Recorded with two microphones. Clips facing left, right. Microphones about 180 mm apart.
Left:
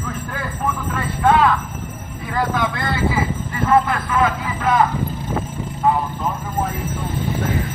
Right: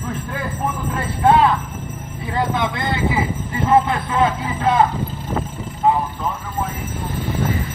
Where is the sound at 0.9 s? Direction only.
30° right (ahead or behind).